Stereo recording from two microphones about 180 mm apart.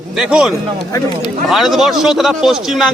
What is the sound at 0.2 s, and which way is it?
A man's voice, 5° right (ahead or behind).